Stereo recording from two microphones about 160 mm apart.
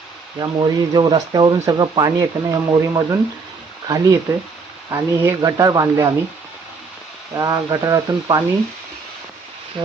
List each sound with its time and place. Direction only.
0.3 s speech: 25° right (ahead or behind)
7.3 s speech: 20° right (ahead or behind)